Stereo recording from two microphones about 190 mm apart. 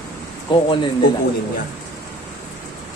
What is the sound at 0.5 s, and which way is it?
Speech, 25° left (ahead or behind).